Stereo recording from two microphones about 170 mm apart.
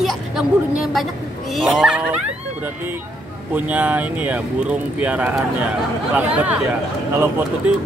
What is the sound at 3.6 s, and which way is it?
Speech, 10° right (ahead or behind).